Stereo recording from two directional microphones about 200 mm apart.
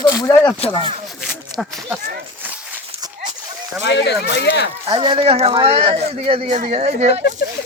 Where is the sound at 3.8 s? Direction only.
60° left (ahead or behind).